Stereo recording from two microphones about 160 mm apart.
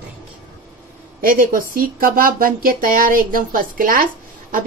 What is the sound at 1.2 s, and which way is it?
Speech, 60° right (ahead or behind).